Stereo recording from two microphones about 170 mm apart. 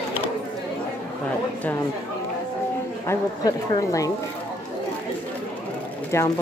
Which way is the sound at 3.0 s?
20° left (ahead or behind).